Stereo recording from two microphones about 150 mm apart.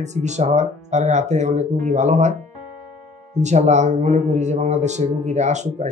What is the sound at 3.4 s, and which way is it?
Speech, 50° right (ahead or behind).